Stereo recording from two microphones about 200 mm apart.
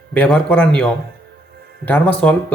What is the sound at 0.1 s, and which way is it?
A man's voice, 5° left (ahead or behind).